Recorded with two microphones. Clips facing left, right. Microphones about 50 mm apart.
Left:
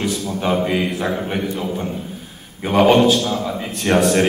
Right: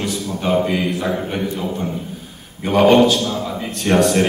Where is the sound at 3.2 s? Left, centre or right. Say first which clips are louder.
Left 1 dB; centre.